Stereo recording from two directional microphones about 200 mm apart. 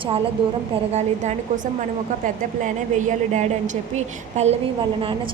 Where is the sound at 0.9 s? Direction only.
35° right (ahead or behind).